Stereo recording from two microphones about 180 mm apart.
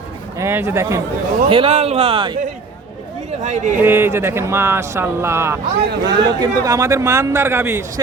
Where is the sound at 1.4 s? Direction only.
30° right (ahead or behind).